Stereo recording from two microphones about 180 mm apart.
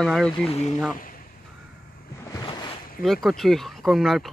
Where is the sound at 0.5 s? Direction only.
35° left (ahead or behind).